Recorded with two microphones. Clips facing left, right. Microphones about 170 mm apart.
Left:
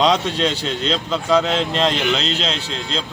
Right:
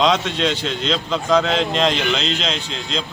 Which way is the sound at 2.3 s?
35° left (ahead or behind).